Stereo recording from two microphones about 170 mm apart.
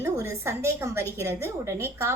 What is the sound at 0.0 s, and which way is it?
A woman's voice, 15° right (ahead or behind).